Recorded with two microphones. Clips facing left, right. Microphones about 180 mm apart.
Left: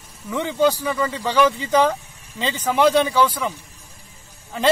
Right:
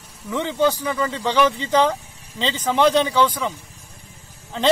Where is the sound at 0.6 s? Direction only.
10° left (ahead or behind).